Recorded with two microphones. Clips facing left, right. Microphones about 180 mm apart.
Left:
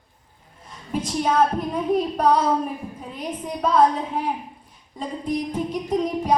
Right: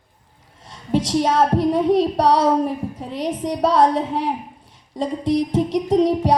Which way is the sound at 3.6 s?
90° right.